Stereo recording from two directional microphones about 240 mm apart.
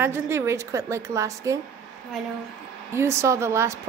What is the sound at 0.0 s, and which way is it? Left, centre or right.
A woman's voice, centre.